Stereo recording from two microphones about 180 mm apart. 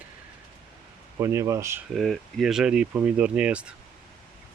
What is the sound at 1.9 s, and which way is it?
Speech, centre (ahead or behind).